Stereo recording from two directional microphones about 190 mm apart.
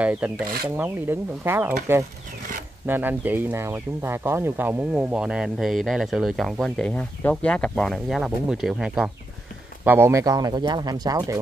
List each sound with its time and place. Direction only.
0.0 s speech: 5° right (ahead or behind)
9.8 s speech: 15° right (ahead or behind)